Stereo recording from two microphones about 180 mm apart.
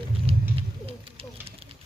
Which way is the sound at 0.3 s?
35° right (ahead or behind).